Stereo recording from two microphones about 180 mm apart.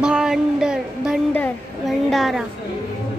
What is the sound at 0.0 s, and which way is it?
Music, 5° right (ahead or behind).